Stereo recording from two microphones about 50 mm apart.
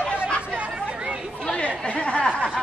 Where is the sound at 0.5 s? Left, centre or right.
Right.